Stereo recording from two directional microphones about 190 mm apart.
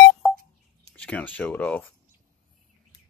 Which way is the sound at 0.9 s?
5° left (ahead or behind).